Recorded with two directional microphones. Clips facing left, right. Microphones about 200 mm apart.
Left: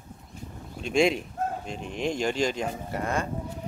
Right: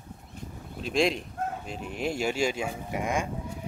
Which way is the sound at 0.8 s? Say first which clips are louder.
Left 3 dB; centre (ahead or behind).